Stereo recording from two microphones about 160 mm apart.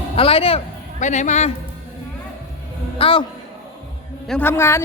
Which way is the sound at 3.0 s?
35° left (ahead or behind).